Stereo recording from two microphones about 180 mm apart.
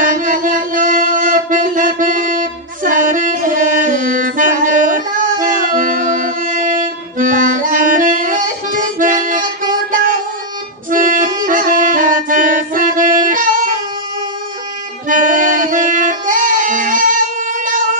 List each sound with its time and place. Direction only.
0.0 s music: 45° right (ahead or behind)
15.0 s music: 45° right (ahead or behind)